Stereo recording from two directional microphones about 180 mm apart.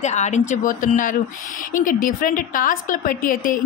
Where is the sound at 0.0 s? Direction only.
40° left (ahead or behind).